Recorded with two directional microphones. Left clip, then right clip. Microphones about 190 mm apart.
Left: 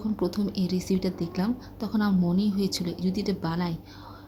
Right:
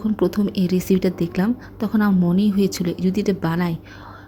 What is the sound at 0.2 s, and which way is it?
Speech, 15° right (ahead or behind).